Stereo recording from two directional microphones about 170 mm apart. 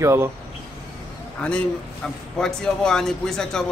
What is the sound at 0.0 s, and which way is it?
Speech, 15° right (ahead or behind).